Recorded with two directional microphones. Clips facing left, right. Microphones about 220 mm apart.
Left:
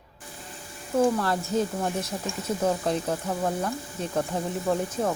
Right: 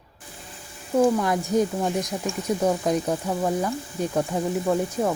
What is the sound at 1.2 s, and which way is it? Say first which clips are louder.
Speech: right 4 dB; 15° right (ahead or behind).